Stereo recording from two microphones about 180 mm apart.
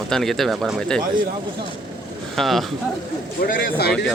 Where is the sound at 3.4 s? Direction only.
50° left (ahead or behind).